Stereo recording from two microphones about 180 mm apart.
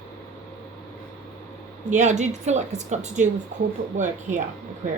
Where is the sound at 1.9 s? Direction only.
40° right (ahead or behind).